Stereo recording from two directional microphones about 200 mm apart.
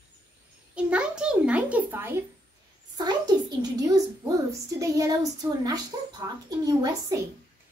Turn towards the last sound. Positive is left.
turn(degrees=-15)  # may be behind; listen again after turning